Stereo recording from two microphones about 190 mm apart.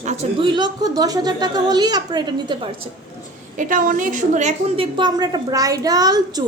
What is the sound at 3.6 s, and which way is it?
A woman's voice, 45° right (ahead or behind).